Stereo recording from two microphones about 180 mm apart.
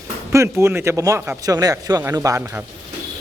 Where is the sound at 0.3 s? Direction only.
15° right (ahead or behind).